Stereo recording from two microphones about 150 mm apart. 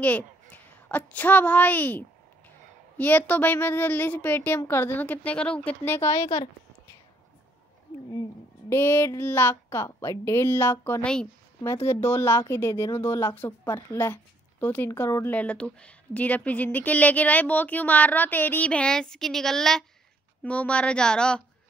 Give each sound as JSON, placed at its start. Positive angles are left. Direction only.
{"t": 0.0, "sound": "a woman's voice", "side_deg": 10}
{"t": 8.1, "sound": "a woman's voice", "side_deg": 20}